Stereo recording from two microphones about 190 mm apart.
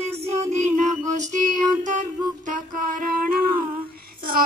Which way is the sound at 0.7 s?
40° right (ahead or behind).